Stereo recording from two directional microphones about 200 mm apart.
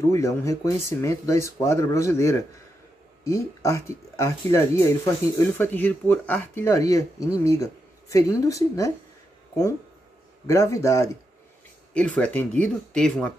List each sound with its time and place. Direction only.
0.1 s speech: 15° left (ahead or behind)
10.4 s speech: 15° left (ahead or behind)